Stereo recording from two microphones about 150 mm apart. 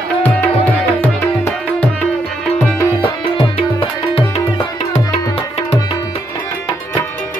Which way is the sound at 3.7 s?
35° left (ahead or behind).